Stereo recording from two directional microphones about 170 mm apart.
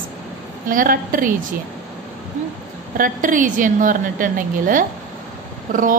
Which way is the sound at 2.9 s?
50° right (ahead or behind).